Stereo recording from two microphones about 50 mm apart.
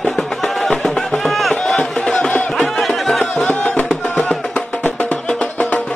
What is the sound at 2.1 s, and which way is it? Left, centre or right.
Music, centre.